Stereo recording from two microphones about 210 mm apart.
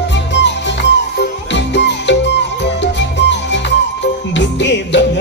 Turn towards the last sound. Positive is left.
turn(degrees=55)  # may be behind; listen again after turning